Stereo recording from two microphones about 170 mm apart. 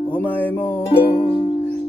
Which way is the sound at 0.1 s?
10° left (ahead or behind).